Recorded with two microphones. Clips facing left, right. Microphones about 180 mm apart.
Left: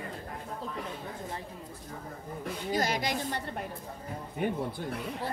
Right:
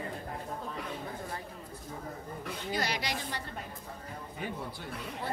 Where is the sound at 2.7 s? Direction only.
45° left (ahead or behind).